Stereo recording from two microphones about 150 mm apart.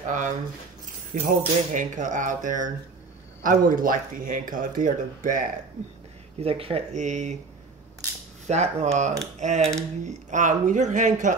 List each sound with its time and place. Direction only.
0.0 s speech: 55° right (ahead or behind)
6.4 s speech: 40° right (ahead or behind)
8.5 s speech: 45° right (ahead or behind)